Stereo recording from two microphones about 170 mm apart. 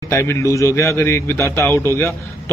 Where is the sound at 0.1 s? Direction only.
15° left (ahead or behind).